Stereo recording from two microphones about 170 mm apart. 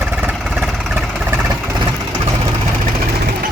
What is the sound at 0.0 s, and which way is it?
Vehicle, 10° right (ahead or behind).